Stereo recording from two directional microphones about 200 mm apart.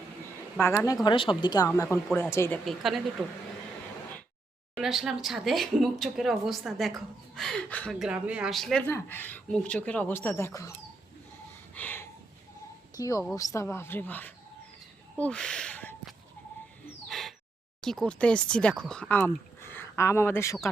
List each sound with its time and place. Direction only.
0.6 s speech: 15° left (ahead or behind)
1.0 s speech: 25° left (ahead or behind)
2.6 s speech: centre (ahead or behind)
4.7 s speech: centre (ahead or behind); by 10.8 s 15° left (ahead or behind)
11.7 s a sound: 10° left (ahead or behind)
13.0 s speech: 15° left (ahead or behind)
15.2 s a sound: 5° left (ahead or behind)
17.7 s speech: centre (ahead or behind)